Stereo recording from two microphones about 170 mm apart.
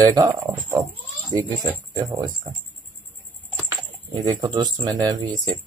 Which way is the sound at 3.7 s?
25° right (ahead or behind).